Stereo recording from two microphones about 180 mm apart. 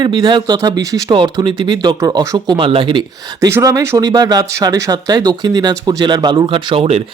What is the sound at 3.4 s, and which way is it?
Speech, 15° right (ahead or behind).